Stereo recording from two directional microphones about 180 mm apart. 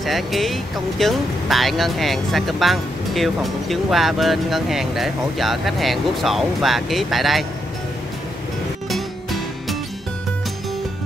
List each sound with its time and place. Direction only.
0.0 s speech: centre (ahead or behind)
8.8 s music: centre (ahead or behind)